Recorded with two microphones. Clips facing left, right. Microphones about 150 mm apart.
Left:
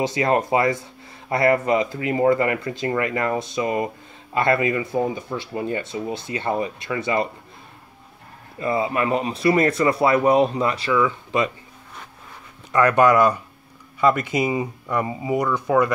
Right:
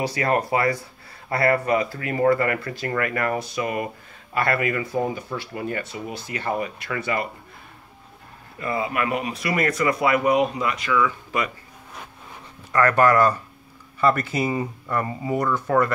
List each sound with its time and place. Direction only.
0.0 s speech: 20° left (ahead or behind)
8.5 s speech: 25° left (ahead or behind)
12.7 s speech: 15° left (ahead or behind)